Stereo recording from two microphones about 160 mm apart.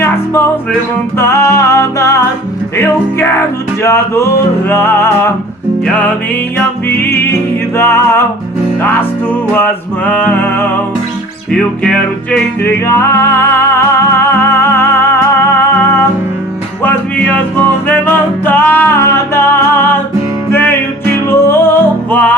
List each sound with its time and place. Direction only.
1.2 s music: 15° left (ahead or behind)
12.6 s music: 15° left (ahead or behind)